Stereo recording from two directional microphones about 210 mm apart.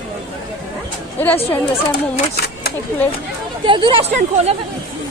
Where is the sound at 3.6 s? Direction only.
25° right (ahead or behind).